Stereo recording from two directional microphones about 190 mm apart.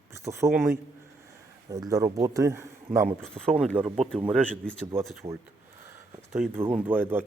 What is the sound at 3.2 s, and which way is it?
Speech, 5° left (ahead or behind).